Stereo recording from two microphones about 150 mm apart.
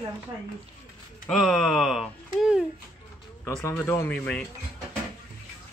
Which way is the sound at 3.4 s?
15° left (ahead or behind).